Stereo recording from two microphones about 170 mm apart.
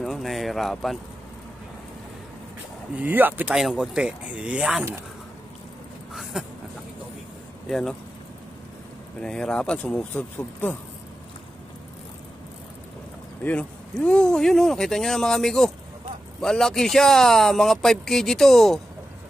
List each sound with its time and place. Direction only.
0.0 s speech: centre (ahead or behind)
3.0 s speech: 10° right (ahead or behind)
6.4 s a man's voice: 5° right (ahead or behind)
9.2 s a man's voice: 5° left (ahead or behind)
13.4 s a man's voice: 10° left (ahead or behind)